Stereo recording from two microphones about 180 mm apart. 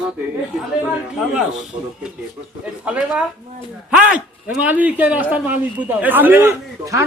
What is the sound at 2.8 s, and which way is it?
A man's voice, 5° right (ahead or behind).